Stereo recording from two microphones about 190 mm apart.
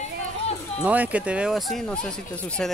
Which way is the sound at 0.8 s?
10° right (ahead or behind).